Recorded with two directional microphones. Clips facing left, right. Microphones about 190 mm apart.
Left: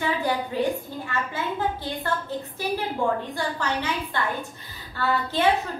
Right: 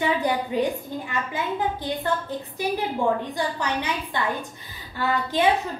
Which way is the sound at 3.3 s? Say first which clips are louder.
Right 1 dB; 15° right (ahead or behind).